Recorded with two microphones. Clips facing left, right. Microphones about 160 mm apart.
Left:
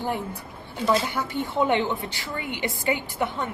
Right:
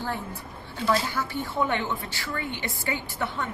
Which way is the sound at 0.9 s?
20° left (ahead or behind).